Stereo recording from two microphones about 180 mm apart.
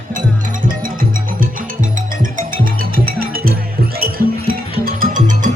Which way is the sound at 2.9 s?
55° right (ahead or behind).